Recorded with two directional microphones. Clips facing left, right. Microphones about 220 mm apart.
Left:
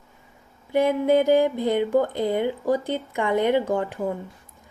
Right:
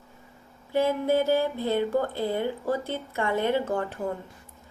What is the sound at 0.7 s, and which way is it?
A woman's voice, 15° left (ahead or behind).